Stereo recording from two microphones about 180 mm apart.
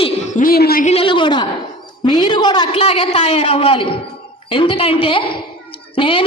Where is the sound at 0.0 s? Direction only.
45° left (ahead or behind).